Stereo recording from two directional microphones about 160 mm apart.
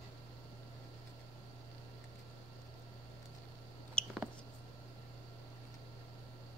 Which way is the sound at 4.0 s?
5° left (ahead or behind).